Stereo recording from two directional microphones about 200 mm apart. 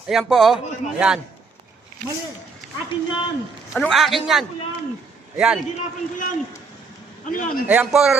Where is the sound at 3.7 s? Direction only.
Centre (ahead or behind).